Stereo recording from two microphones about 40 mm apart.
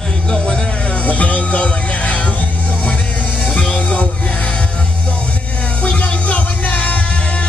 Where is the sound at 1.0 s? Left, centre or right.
Left.